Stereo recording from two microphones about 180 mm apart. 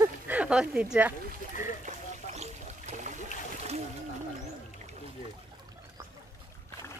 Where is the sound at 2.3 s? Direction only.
35° right (ahead or behind).